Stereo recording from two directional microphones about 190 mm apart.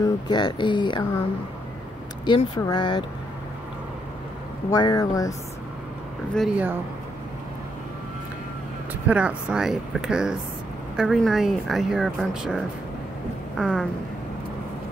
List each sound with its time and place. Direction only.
0.0 s speech: 20° left (ahead or behind)
2.2 s speech: 25° left (ahead or behind)
4.6 s speech: 20° left (ahead or behind)
6.3 s speech: 5° right (ahead or behind)
9.0 s speech: 5° right (ahead or behind)